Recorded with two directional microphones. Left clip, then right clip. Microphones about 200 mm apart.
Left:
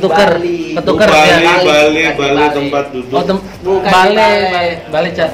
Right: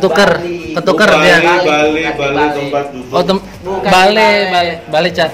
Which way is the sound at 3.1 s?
50° right (ahead or behind).